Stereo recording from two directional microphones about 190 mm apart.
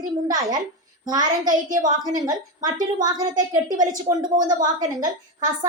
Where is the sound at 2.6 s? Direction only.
40° right (ahead or behind).